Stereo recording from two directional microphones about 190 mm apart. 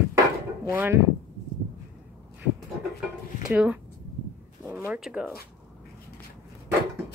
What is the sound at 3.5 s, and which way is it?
Speech, 5° right (ahead or behind).